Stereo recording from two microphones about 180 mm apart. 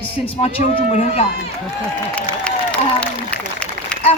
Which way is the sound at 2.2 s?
5° left (ahead or behind).